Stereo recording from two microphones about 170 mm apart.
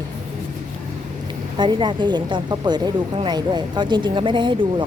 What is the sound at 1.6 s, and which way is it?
Speech, 25° right (ahead or behind).